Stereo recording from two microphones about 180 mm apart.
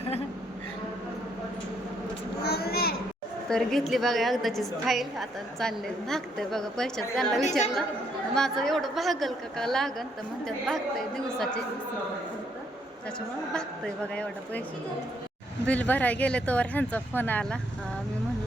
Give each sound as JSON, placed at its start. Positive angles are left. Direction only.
{"t": 2.4, "sound": "a sound", "side_deg": 60}
{"t": 3.5, "sound": "a woman's voice", "side_deg": 0}
{"t": 13.5, "sound": "speech", "side_deg": 5}
{"t": 15.6, "sound": "speech", "side_deg": 10}